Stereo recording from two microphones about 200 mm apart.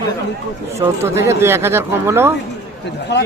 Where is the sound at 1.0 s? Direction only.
15° right (ahead or behind).